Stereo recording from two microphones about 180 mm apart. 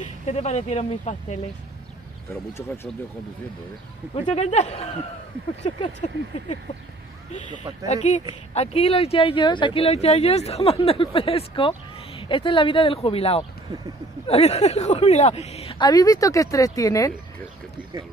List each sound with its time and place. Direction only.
0.0 s speech: 40° left (ahead or behind)
4.1 s speech: 40° left (ahead or behind)
7.8 s speech: 40° left (ahead or behind); by 17.1 s 20° left (ahead or behind)